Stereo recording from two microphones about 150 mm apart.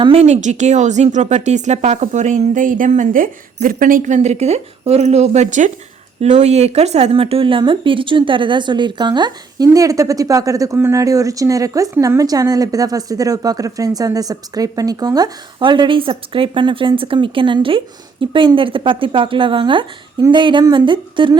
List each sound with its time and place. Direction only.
0.0 s a woman's voice: 40° right (ahead or behind)